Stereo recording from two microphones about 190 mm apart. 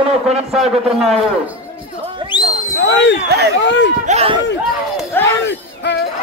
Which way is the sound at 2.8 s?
70° left (ahead or behind).